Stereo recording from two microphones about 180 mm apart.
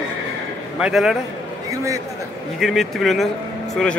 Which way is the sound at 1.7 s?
20° right (ahead or behind).